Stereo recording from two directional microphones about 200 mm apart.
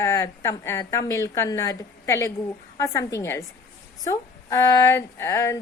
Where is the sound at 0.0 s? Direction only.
15° left (ahead or behind).